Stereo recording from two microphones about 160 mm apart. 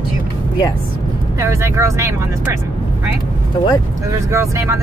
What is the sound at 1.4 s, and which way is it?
Speech, 20° right (ahead or behind).